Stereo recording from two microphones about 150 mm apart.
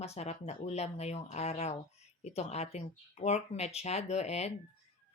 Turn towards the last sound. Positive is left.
turn(degrees=45)  # may be behind; listen again after turning